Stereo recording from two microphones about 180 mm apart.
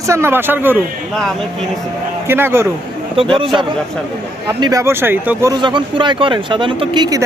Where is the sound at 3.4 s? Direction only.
25° right (ahead or behind).